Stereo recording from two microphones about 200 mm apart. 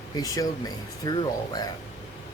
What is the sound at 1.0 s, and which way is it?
Speech, 20° left (ahead or behind).